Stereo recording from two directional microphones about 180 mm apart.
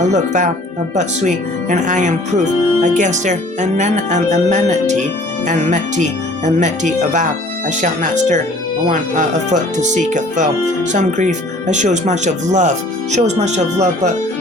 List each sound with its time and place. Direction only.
0.0 s speech: 40° right (ahead or behind)